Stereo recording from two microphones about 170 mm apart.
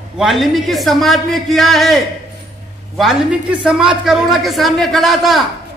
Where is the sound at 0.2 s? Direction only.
Centre (ahead or behind).